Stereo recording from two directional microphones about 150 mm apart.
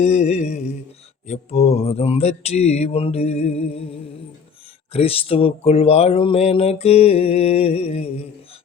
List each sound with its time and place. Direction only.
0.0 s mantra: 50° left (ahead or behind)
1.3 s speech: 45° left (ahead or behind)